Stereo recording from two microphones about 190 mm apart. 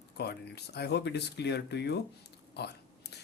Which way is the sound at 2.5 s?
60° left (ahead or behind).